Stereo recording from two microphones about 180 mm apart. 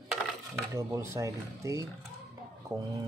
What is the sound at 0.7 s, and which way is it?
Speech, 15° right (ahead or behind).